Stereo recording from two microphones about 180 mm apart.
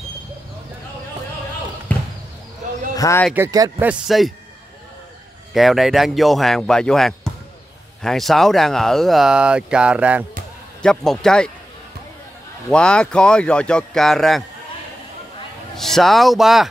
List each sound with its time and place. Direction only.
1.9 s basketball bounce: 10° left (ahead or behind)
2.9 s a sound: 20° left (ahead or behind)
3.3 s speech: 20° right (ahead or behind)
3.8 s speech: 5° right (ahead or behind)
5.5 s speech: centre (ahead or behind)
10.8 s speech: 5° left (ahead or behind)
12.6 s speech: 5° left (ahead or behind)
15.7 s speech: centre (ahead or behind)